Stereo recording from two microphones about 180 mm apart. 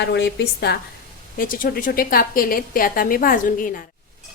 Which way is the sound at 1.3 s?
50° left (ahead or behind).